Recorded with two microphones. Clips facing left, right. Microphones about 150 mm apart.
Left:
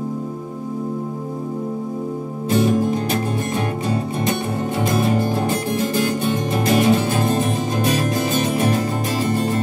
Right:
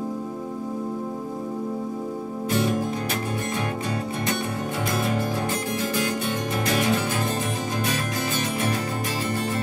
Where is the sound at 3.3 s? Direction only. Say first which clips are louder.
Left 5 dB; 25° left (ahead or behind).